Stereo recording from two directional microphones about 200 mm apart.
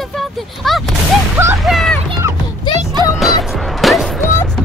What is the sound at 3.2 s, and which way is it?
Music, centre (ahead or behind).